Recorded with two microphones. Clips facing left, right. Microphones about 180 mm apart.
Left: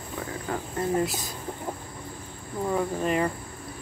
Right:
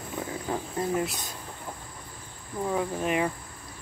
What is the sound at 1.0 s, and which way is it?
Speech, centre (ahead or behind).